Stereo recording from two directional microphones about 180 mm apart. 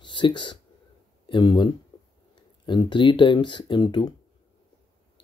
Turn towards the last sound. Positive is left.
turn(degrees=25)  # may be behind; listen again after turning